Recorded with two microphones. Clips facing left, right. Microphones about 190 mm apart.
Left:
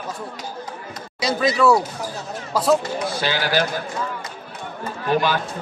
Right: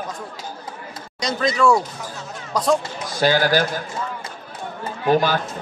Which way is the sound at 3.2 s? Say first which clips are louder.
Right 6 dB; 45° right (ahead or behind).